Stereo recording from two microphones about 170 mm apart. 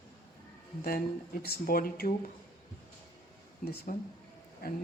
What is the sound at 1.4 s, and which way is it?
Speech, 65° left (ahead or behind).